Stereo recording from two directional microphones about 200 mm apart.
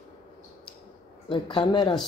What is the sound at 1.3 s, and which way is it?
Speech, 25° left (ahead or behind).